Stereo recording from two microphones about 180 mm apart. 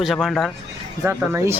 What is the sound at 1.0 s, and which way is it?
Speech, 15° right (ahead or behind).